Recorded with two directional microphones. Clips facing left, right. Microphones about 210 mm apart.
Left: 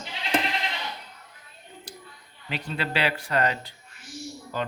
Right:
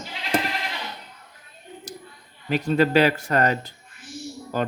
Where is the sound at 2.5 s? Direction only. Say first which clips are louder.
Right 11 dB; 45° right (ahead or behind).